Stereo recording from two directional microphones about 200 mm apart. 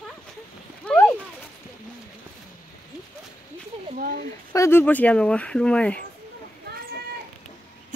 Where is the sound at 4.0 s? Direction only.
45° right (ahead or behind).